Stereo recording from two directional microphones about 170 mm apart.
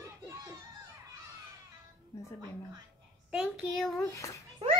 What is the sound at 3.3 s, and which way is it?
Child singing, 5° right (ahead or behind).